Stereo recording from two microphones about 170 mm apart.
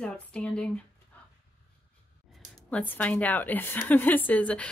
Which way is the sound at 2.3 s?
5° left (ahead or behind).